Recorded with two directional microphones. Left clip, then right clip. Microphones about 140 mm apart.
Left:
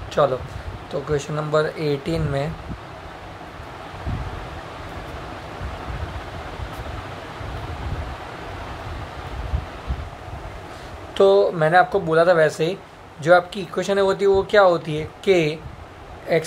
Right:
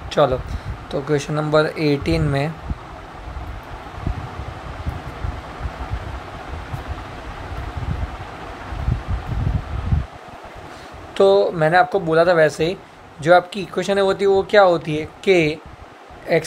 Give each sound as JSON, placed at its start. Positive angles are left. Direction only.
{"t": 0.1, "sound": "speech", "side_deg": -30}
{"t": 11.1, "sound": "speech", "side_deg": -25}